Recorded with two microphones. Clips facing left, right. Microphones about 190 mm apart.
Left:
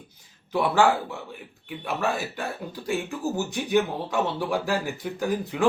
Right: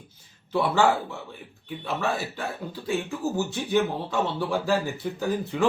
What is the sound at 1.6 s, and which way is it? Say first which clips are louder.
Speech: left 1 dB; 15° left (ahead or behind).